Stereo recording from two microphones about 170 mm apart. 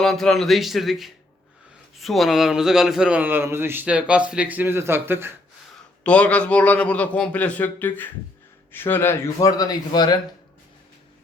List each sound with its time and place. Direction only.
0.0 s speech: centre (ahead or behind)
6.0 s a man's voice: 5° left (ahead or behind); by 10.2 s 25° left (ahead or behind)